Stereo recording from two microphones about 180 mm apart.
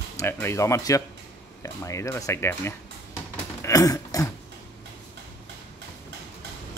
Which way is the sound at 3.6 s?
20° left (ahead or behind).